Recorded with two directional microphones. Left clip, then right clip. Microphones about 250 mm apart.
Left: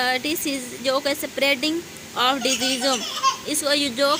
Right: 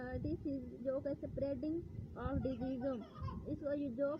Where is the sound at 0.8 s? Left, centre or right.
Right.